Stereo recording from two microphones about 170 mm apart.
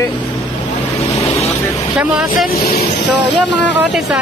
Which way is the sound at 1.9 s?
5° right (ahead or behind).